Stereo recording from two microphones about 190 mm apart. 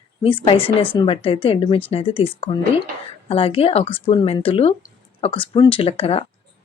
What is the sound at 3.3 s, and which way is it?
Speech, 30° left (ahead or behind).